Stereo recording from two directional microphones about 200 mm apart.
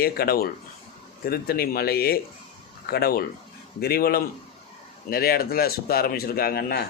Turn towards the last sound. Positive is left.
turn(degrees=50)  # may be behind; listen again after turning